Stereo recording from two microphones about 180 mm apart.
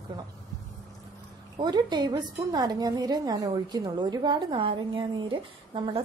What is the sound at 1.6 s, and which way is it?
A woman's voice, 25° right (ahead or behind).